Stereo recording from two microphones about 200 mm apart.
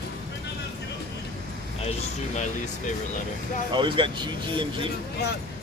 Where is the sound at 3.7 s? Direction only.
25° right (ahead or behind).